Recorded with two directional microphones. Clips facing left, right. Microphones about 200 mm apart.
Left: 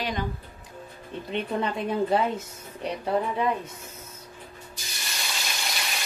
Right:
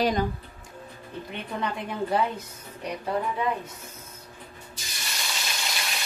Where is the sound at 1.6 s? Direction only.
25° left (ahead or behind).